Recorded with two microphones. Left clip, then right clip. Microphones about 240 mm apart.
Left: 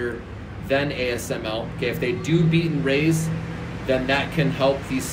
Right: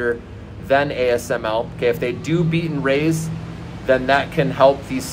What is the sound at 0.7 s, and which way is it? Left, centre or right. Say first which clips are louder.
Speech: right 6 dB; centre.